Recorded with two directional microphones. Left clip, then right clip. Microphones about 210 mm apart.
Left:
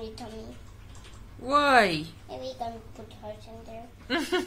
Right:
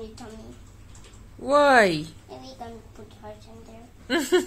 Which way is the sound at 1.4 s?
30° right (ahead or behind).